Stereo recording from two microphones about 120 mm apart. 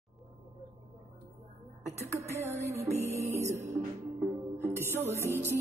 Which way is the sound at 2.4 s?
20° right (ahead or behind).